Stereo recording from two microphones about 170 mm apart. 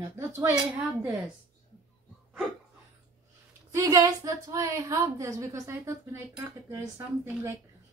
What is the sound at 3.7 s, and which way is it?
A woman's voice, 20° right (ahead or behind).